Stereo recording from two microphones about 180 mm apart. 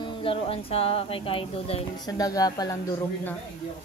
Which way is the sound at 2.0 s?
20° left (ahead or behind).